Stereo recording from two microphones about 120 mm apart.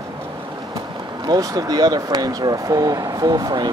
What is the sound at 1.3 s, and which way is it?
Speech, 30° right (ahead or behind).